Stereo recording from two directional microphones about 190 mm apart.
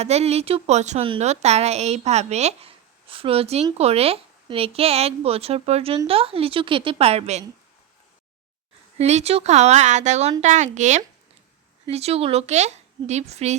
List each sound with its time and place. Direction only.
0.0 s a woman's voice: 35° right (ahead or behind)
9.0 s a woman's voice: 35° right (ahead or behind)